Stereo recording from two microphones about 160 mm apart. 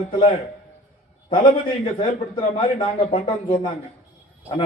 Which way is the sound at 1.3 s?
30° left (ahead or behind).